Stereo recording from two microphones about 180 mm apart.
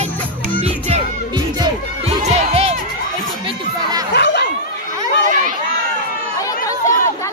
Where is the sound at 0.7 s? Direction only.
35° right (ahead or behind).